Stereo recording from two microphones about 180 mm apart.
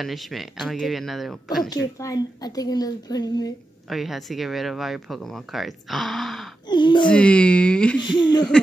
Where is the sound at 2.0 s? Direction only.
20° left (ahead or behind).